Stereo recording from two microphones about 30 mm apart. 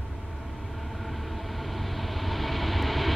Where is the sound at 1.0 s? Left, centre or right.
Centre.